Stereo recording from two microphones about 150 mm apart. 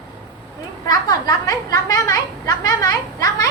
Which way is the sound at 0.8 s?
25° left (ahead or behind).